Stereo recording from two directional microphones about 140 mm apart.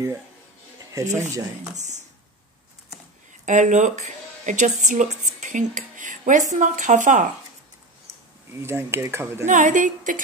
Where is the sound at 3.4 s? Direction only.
60° right (ahead or behind).